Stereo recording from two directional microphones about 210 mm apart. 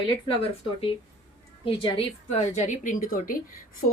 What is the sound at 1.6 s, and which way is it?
A woman's voice, 25° left (ahead or behind).